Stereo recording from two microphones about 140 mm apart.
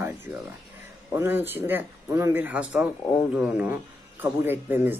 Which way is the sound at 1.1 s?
15° right (ahead or behind).